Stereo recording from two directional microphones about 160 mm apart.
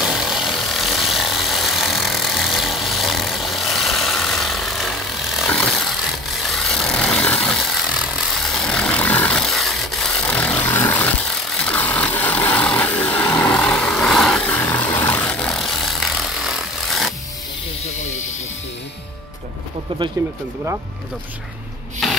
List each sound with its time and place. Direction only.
0.0 s vehicle: centre (ahead or behind)
19.9 s a sound: 35° right (ahead or behind)
22.0 s rub: centre (ahead or behind)